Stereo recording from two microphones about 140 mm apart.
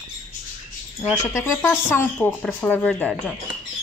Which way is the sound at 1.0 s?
15° left (ahead or behind).